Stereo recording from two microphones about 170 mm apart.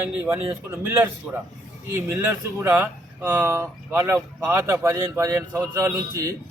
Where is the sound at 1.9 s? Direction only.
15° right (ahead or behind).